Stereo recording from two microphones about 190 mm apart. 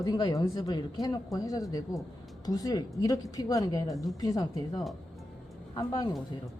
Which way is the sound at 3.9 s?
Centre (ahead or behind).